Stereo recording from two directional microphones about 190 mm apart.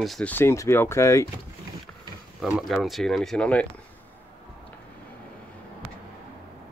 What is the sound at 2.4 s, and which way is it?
Speech, centre (ahead or behind).